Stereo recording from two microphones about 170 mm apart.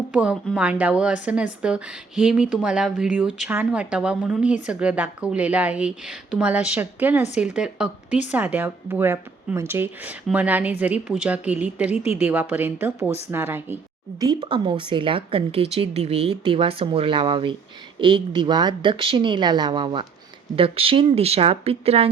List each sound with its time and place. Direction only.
0.1 s speech: 5° right (ahead or behind)
14.4 s speech: 30° right (ahead or behind)